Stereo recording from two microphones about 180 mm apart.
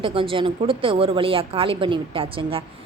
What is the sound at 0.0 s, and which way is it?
A woman's voice, 30° right (ahead or behind).